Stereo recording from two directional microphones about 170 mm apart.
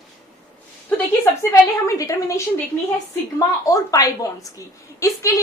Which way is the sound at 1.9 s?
20° left (ahead or behind).